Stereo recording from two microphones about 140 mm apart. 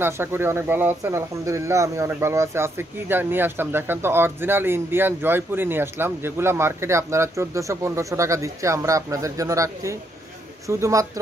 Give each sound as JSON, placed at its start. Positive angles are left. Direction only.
{"t": 0.0, "sound": "speech", "side_deg": -15}